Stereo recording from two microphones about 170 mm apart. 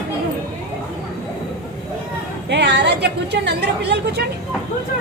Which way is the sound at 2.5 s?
85° right.